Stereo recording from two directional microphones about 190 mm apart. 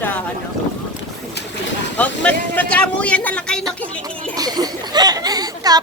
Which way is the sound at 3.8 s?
5° left (ahead or behind).